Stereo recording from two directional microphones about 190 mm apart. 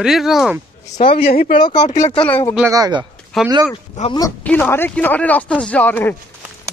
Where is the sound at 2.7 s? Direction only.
20° right (ahead or behind).